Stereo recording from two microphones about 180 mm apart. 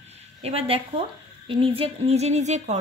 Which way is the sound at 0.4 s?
30° right (ahead or behind).